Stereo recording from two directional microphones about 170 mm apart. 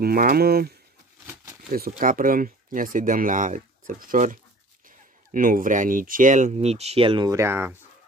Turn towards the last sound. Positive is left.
turn(degrees=-15)  # may be behind; listen again after turning